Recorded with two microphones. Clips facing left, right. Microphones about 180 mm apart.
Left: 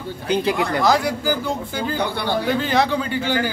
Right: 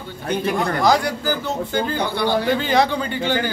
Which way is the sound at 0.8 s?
5° left (ahead or behind).